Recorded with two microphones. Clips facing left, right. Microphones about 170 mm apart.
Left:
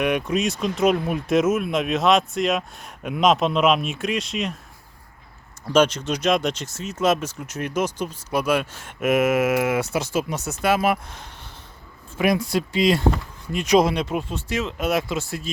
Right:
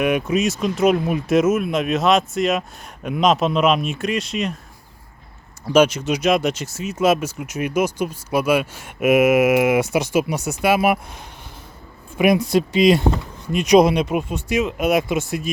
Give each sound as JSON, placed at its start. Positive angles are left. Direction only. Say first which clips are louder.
{"t": 0.0, "sound": "speech", "louder": "right 3 dB", "side_deg": -5}
{"t": 5.6, "sound": "speech", "louder": "right 3 dB", "side_deg": -10}